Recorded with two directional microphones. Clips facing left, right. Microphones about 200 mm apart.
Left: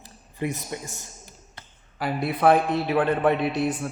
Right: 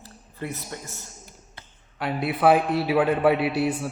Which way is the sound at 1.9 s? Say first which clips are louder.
Even; centre (ahead or behind).